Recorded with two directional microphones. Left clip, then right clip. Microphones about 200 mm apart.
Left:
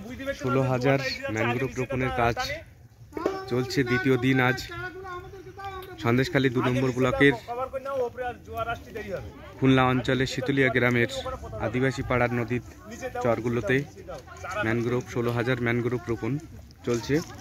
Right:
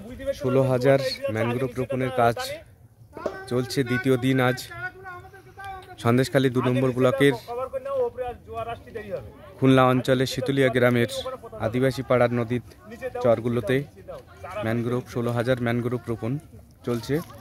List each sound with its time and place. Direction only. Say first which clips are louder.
0.2 s a man's voice: right 4 dB; 60° right (ahead or behind)
5.9 s a man's voice: right 3 dB; 65° right (ahead or behind)
8.2 s speech: even; 20° right (ahead or behind)
9.6 s a man's voice: right 4 dB; 65° right (ahead or behind)